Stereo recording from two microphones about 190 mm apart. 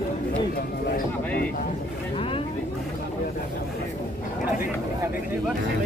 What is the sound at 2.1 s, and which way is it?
Vehicle, 30° left (ahead or behind).